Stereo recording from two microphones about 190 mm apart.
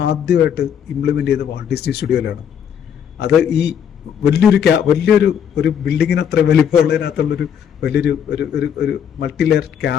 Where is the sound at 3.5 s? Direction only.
60° left (ahead or behind).